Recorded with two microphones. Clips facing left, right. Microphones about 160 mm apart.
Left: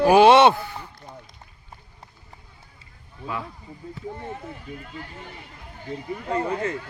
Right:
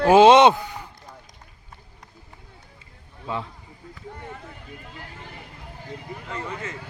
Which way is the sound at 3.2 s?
25° right (ahead or behind).